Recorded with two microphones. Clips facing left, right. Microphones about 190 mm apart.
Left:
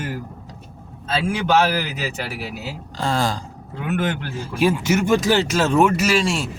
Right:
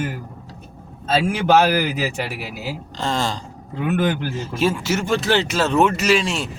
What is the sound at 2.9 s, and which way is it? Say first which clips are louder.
Speech: left 2 dB; 10° left (ahead or behind).